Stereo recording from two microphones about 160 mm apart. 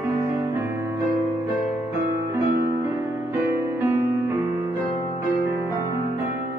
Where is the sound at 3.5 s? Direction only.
15° right (ahead or behind).